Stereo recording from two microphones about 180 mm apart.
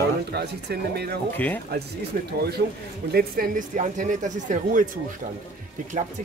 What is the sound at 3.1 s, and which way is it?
Speech, 50° right (ahead or behind).